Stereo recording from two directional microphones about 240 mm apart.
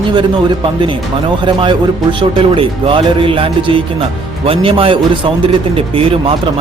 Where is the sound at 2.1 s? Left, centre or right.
Right.